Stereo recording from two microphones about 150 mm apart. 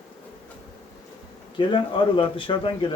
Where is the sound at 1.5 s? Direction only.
35° left (ahead or behind).